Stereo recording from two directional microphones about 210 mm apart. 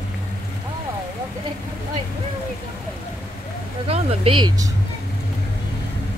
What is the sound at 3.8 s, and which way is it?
Speech, 25° right (ahead or behind).